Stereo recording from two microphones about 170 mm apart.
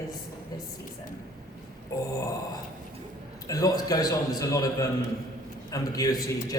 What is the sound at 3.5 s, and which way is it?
A man's voice, 20° left (ahead or behind).